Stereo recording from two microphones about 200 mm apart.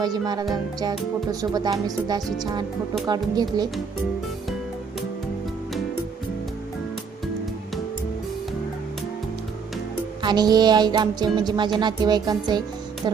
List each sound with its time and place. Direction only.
0.0 s music: 20° right (ahead or behind)
10.2 s music: 20° right (ahead or behind)